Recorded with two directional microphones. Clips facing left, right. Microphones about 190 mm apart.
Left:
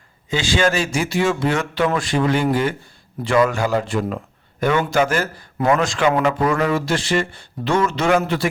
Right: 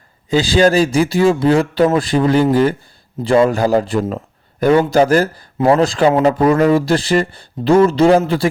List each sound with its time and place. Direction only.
0.3 s speech: 35° right (ahead or behind)